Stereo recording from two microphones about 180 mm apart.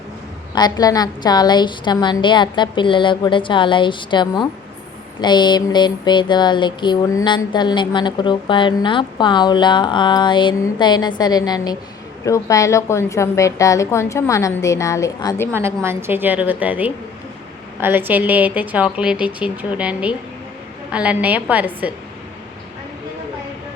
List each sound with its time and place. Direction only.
0.5 s a sound: 20° left (ahead or behind)
12.2 s a woman's voice: 15° left (ahead or behind)
15.5 s a woman's voice: 15° right (ahead or behind)